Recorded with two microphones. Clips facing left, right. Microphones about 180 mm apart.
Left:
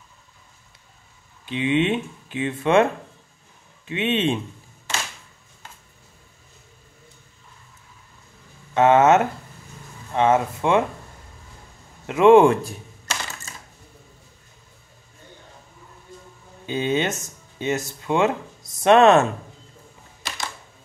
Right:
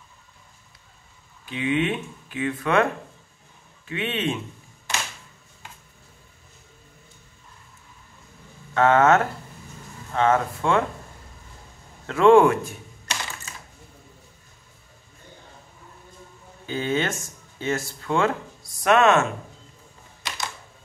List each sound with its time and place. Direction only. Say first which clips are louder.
1.4 s speech: left 3 dB; 25° left (ahead or behind)
8.7 s speech: left 2 dB; 20° left (ahead or behind)
12.1 s speech: left 2 dB; 20° left (ahead or behind)
16.6 s speech: left 2 dB; 20° left (ahead or behind)